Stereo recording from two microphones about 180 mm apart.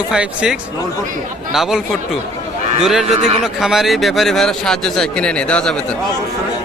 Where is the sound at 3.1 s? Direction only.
40° right (ahead or behind).